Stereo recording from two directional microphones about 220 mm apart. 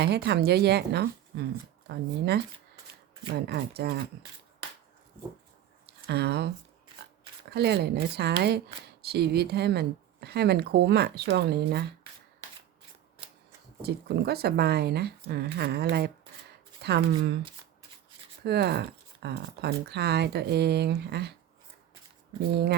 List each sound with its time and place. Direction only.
0.0 s speech: 50° right (ahead or behind)
5.8 s a sound: 50° right (ahead or behind)
7.5 s speech: 50° right (ahead or behind)
13.8 s speech: 45° right (ahead or behind)
18.4 s speech: 50° right (ahead or behind)